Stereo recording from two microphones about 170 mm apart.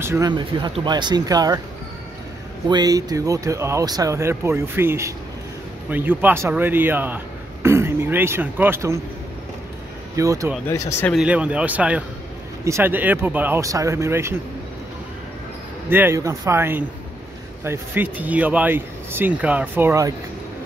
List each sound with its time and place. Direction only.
0.0 s speech: 15° right (ahead or behind)
0.3 s speech: 25° right (ahead or behind)
2.7 s speech: 20° right (ahead or behind)
10.1 s speech: 20° right (ahead or behind)
11.1 s speech: 5° right (ahead or behind)
15.9 s speech: 15° right (ahead or behind)